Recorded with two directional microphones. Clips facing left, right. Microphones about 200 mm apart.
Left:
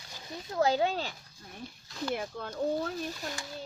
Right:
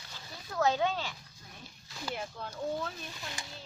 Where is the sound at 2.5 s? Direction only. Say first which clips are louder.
Left 5 dB; 40° left (ahead or behind).